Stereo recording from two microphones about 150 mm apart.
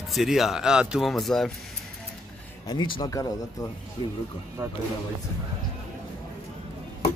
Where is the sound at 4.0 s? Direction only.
40° left (ahead or behind).